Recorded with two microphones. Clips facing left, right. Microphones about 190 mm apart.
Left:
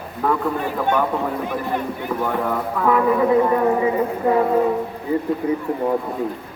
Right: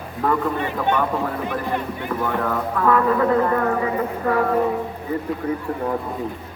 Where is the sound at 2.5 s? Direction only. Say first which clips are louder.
Right 1 dB; 10° left (ahead or behind).